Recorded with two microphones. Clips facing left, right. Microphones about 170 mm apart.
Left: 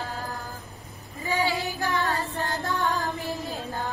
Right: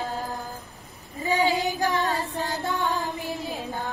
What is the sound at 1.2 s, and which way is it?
Female singing, 20° right (ahead or behind).